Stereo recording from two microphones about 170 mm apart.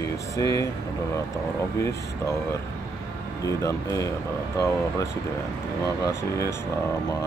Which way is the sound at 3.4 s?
15° left (ahead or behind).